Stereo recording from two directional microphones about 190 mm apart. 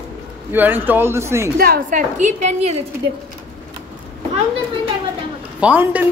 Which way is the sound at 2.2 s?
40° right (ahead or behind).